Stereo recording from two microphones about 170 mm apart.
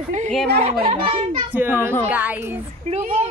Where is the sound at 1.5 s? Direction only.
10° right (ahead or behind).